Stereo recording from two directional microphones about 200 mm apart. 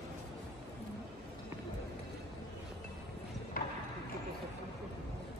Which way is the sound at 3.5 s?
45° left (ahead or behind).